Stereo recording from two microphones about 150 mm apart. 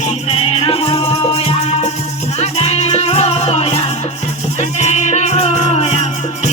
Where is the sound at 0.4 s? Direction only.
40° left (ahead or behind).